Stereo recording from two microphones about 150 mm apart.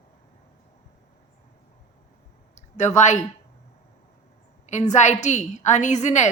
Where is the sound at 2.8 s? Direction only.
50° left (ahead or behind).